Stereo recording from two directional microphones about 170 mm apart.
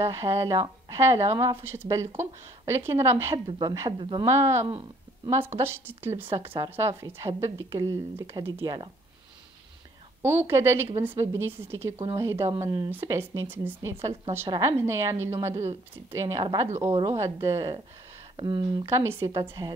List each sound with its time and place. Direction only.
0.0 s a woman's voice: 15° right (ahead or behind)
3.4 s a woman's voice: 30° right (ahead or behind)
4.2 s a woman's voice: 15° right (ahead or behind)
4.6 s speech: 25° right (ahead or behind)
5.6 s a woman's voice: 15° right (ahead or behind)
10.2 s a woman's voice: 15° right (ahead or behind)
16.6 s a woman's voice: 35° right (ahead or behind); by 17.7 s 20° right (ahead or behind)
18.3 s a woman's voice: 30° right (ahead or behind)
18.9 s a woman's voice: 15° right (ahead or behind)